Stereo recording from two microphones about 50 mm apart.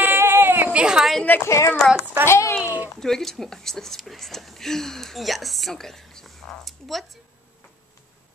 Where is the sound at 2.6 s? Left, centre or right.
Right.